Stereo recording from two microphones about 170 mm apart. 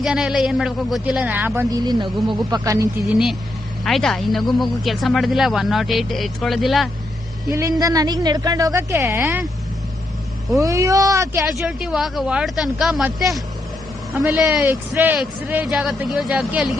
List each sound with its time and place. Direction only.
0.0 s speech: 5° right (ahead or behind)
1.8 s a woman's voice: 25° right (ahead or behind)
3.0 s speech: centre (ahead or behind)
7.5 s a woman's voice: 20° right (ahead or behind)
10.6 s a woman's voice: 20° right (ahead or behind)
11.6 s speech: 5° right (ahead or behind)